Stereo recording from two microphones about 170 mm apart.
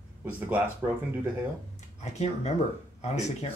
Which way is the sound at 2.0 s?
40° left (ahead or behind).